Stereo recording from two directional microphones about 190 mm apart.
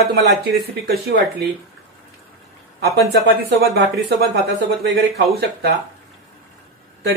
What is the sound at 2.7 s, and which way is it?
Speech, 60° right (ahead or behind).